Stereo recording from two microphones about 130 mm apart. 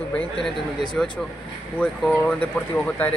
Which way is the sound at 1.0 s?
5° left (ahead or behind).